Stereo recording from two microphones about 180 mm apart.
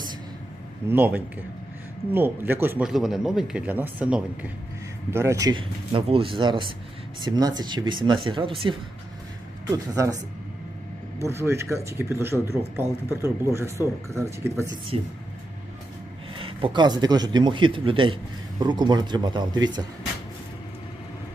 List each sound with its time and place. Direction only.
0.9 s speech: 10° right (ahead or behind); by 8.7 s 30° right (ahead or behind)
9.9 s speech: 20° right (ahead or behind)
11.2 s speech: 15° right (ahead or behind)
16.3 s speech: 30° right (ahead or behind)